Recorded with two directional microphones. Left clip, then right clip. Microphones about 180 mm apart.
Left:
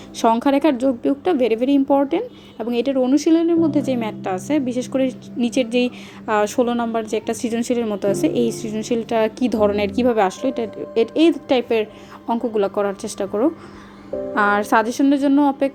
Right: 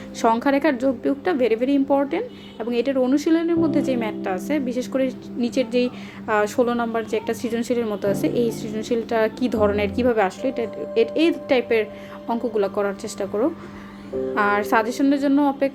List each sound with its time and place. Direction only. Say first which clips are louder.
0.2 s a woman's voice: left 2 dB; 25° left (ahead or behind)